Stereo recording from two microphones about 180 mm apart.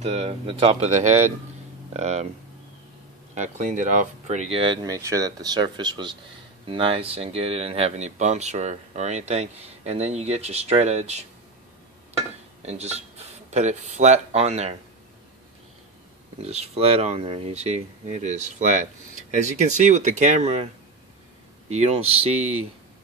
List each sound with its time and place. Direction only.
0.0 s speech: 35° right (ahead or behind)
3.3 s speech: 40° right (ahead or behind)
12.6 s speech: 35° right (ahead or behind)
16.4 s speech: 35° right (ahead or behind)